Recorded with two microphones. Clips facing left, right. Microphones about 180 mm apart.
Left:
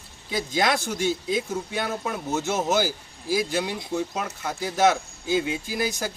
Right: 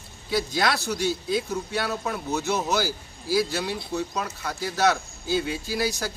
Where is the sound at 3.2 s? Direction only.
20° left (ahead or behind).